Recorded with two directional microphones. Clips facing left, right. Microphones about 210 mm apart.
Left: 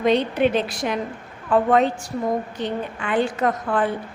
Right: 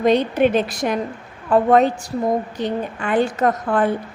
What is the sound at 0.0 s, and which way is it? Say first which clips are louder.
A woman's voice: right 3 dB; 45° right (ahead or behind).